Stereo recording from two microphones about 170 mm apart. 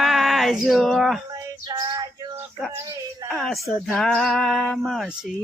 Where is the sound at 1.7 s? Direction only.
20° right (ahead or behind).